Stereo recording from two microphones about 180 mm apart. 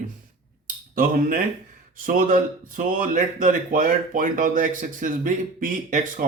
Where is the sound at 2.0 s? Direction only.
50° right (ahead or behind).